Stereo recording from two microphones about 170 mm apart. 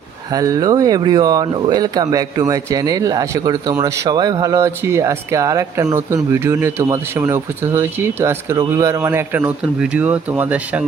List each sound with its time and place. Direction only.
0.3 s speech: 20° right (ahead or behind)